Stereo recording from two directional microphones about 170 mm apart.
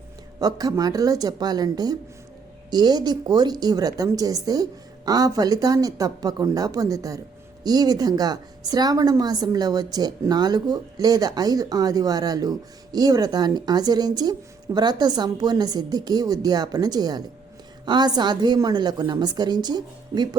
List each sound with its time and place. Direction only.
0.3 s a woman's voice: 20° right (ahead or behind)